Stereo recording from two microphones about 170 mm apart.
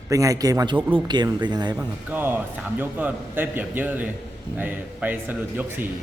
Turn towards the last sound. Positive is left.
turn(degrees=-10)  # may be behind; listen again after turning